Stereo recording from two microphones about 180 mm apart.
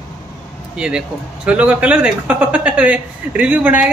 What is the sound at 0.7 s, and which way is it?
Speech, 5° right (ahead or behind).